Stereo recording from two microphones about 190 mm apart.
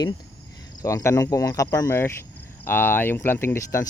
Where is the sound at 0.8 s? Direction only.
15° left (ahead or behind).